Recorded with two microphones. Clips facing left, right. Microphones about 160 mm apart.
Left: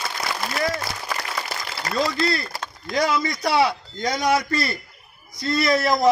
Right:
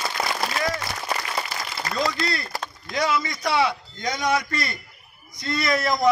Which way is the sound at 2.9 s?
35° left (ahead or behind).